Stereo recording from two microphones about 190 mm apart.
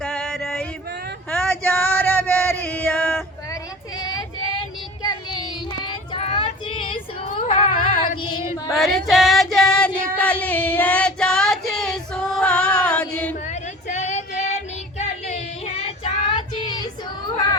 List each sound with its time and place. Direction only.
0.0 s male singing: 5° left (ahead or behind)
1.3 s a sound: 10° left (ahead or behind)
3.5 s child singing: 20° left (ahead or behind)
5.9 s female singing: 25° left (ahead or behind)
7.5 s a sound: 30° left (ahead or behind)
8.2 s female singing: 20° left (ahead or behind)
8.7 s female singing: centre (ahead or behind)
13.5 s child singing: 35° left (ahead or behind); by 17.6 s 20° left (ahead or behind)